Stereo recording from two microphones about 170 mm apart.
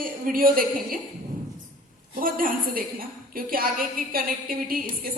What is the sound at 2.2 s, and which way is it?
Speech, 55° right (ahead or behind).